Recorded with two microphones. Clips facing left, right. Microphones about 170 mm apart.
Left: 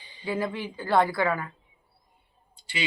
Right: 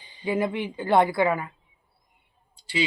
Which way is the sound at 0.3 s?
20° right (ahead or behind).